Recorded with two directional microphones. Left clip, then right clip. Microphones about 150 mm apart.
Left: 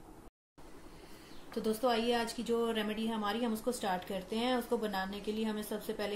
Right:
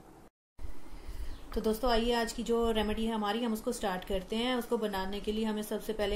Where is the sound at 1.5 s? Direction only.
50° right (ahead or behind).